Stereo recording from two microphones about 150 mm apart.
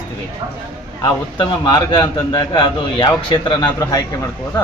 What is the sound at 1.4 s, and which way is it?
A man's voice, 30° left (ahead or behind).